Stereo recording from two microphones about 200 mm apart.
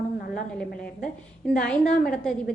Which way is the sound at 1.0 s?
5° left (ahead or behind).